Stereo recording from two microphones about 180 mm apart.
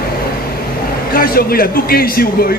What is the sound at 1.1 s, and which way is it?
Speech, 55° left (ahead or behind).